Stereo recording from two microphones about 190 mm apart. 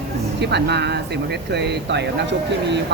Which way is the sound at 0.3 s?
65° right (ahead or behind).